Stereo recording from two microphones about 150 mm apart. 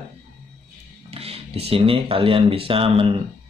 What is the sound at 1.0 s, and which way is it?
Speech, 45° right (ahead or behind).